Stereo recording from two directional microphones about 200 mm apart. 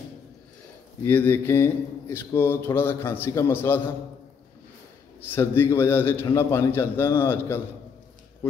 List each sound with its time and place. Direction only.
1.0 s speech: 10° left (ahead or behind)
5.2 s speech: 10° left (ahead or behind)